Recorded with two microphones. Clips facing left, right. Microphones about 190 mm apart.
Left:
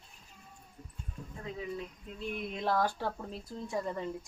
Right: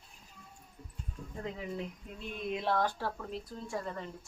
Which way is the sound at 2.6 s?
5° left (ahead or behind).